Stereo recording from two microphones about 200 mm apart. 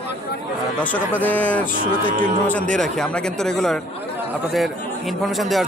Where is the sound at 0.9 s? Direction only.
10° left (ahead or behind).